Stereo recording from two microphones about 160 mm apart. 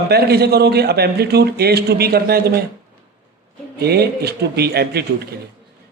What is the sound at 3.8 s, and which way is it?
A man's voice, 85° right.